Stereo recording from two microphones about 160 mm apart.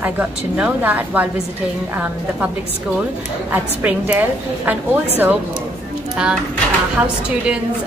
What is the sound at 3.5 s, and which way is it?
A woman's voice, 10° right (ahead or behind).